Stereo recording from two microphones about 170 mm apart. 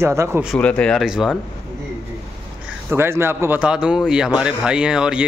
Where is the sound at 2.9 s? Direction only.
15° right (ahead or behind).